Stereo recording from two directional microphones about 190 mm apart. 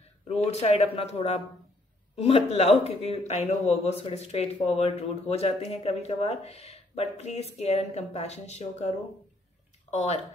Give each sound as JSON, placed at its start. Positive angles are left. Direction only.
{"t": 0.3, "sound": "speech", "side_deg": 35}